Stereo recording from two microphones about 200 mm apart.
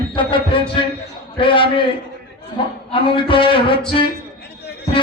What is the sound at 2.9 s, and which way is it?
A man's voice, 25° left (ahead or behind).